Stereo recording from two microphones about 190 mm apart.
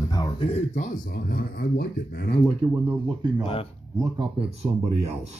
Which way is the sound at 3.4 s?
30° left (ahead or behind).